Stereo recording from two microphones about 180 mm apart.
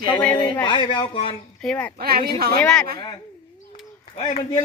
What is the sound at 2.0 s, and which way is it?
Speech, 60° right (ahead or behind).